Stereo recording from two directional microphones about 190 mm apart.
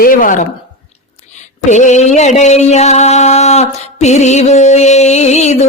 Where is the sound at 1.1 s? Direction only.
40° left (ahead or behind).